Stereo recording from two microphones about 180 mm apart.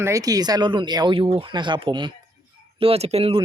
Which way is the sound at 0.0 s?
20° right (ahead or behind).